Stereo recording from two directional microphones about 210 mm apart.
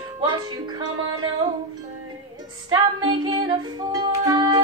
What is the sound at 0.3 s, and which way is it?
Music, 20° right (ahead or behind).